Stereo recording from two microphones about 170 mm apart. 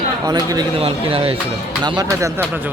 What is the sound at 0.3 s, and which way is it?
Speech, 20° right (ahead or behind).